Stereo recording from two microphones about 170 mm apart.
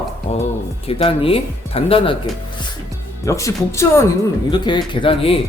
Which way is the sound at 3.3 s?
20° left (ahead or behind).